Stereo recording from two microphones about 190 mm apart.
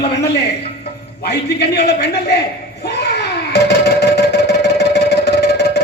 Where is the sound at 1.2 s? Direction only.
60° left (ahead or behind).